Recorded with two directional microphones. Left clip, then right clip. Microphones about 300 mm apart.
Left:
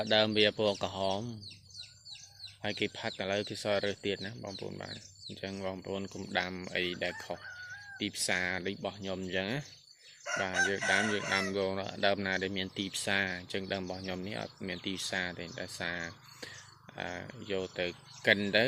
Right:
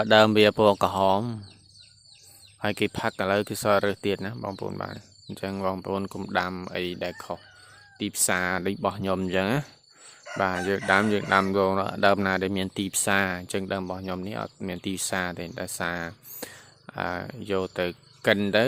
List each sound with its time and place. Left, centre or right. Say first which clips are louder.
0.0 s chicken: right 9 dB; right
2.6 s chicken: right 8 dB; right